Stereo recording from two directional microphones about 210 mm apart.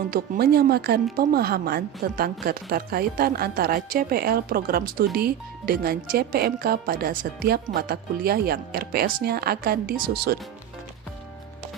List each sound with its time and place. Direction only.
0.1 s speech: 45° right (ahead or behind)